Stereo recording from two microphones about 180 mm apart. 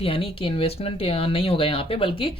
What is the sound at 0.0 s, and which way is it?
Speech, 30° left (ahead or behind).